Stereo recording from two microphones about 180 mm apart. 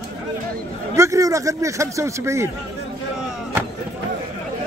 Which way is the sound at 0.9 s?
15° right (ahead or behind).